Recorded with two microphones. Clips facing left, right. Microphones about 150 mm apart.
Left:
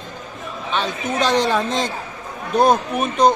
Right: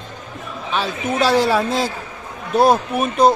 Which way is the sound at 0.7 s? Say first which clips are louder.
Right 1 dB; 5° right (ahead or behind).